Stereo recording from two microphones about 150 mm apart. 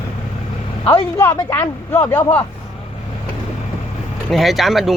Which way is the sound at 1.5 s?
15° left (ahead or behind).